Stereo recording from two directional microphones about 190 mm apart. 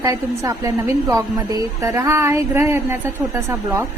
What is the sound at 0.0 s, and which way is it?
A woman's voice, 15° right (ahead or behind).